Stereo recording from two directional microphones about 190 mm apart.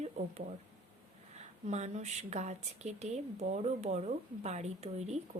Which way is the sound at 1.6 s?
35° right (ahead or behind).